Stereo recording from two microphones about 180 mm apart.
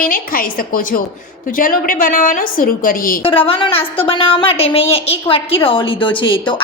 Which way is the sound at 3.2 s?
30° left (ahead or behind).